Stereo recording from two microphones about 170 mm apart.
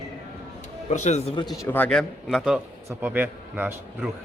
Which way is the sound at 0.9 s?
45° left (ahead or behind).